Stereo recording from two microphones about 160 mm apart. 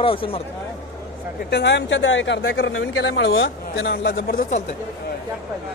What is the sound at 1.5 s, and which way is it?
Speech, 90° left.